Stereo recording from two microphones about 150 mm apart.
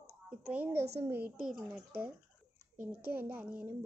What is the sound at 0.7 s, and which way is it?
Speech, 90° right.